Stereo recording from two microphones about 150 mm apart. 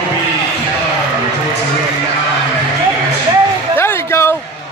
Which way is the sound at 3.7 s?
15° left (ahead or behind).